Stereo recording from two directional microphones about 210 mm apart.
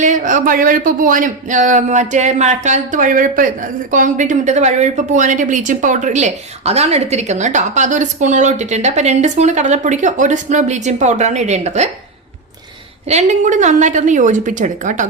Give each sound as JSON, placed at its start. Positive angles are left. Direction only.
{"t": 0.0, "sound": "speech", "side_deg": -35}
{"t": 13.1, "sound": "speech", "side_deg": -35}